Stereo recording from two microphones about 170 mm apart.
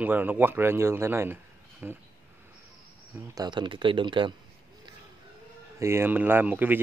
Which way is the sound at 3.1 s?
20° right (ahead or behind).